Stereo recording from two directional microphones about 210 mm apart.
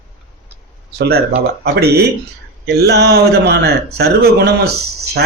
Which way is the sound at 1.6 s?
50° right (ahead or behind).